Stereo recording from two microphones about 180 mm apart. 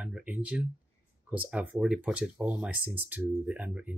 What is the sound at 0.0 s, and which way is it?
Speech, 5° right (ahead or behind).